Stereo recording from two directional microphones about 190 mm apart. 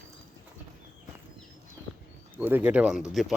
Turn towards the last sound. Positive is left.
turn(degrees=0)  # may be behind; listen again after turning